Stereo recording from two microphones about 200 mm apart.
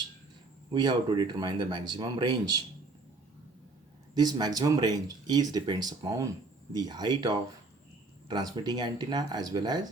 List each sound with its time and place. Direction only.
0.7 s speech: 20° right (ahead or behind)
4.1 s speech: 20° right (ahead or behind)